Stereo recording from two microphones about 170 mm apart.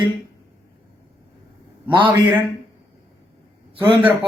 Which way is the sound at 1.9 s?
30° right (ahead or behind).